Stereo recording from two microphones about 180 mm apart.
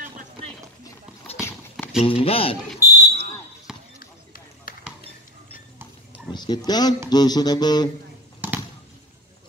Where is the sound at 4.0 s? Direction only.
50° left (ahead or behind).